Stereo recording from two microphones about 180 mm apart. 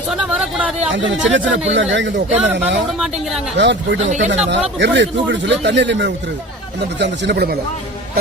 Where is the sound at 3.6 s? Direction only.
80° right.